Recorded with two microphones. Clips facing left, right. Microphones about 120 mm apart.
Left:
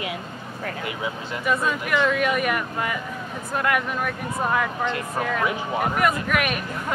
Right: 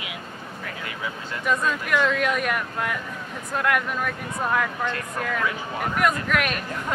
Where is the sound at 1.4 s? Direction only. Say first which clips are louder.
Left 1 dB; 5° left (ahead or behind).